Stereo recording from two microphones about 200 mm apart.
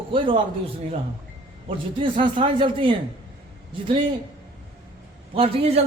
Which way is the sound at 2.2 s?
25° right (ahead or behind).